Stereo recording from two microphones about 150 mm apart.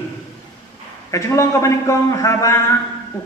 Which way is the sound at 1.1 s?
20° left (ahead or behind).